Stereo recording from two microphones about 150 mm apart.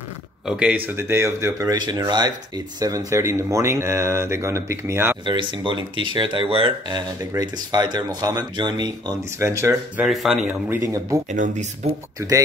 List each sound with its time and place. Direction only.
0.5 s speech: 5° right (ahead or behind)
5.2 s speech: 30° right (ahead or behind)
7.2 s speech: 25° right (ahead or behind)
9.9 s speech: centre (ahead or behind)
11.2 s speech: 55° right (ahead or behind)